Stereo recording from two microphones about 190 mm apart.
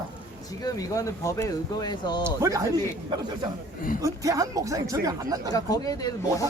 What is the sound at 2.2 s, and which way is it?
Speech, 15° right (ahead or behind).